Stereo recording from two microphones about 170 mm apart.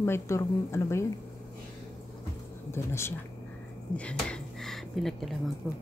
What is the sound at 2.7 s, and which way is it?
Speech, 15° left (ahead or behind).